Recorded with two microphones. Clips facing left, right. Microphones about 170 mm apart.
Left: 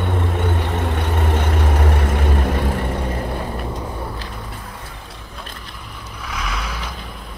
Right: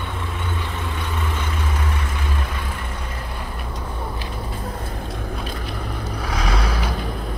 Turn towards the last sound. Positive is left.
turn(degrees=-35)  # may be behind; listen again after turning